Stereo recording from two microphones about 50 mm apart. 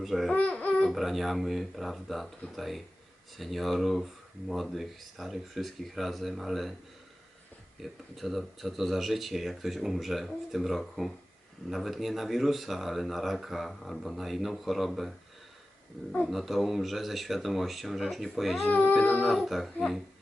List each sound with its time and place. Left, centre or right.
0.0 s speech: centre
0.3 s speech: left
0.9 s speech: centre
7.8 s speech: centre
16.2 s speech: centre
18.7 s speech: left
19.3 s speech: centre